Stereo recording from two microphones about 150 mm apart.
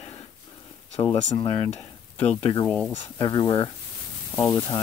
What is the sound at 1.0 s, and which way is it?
Speech, 25° left (ahead or behind).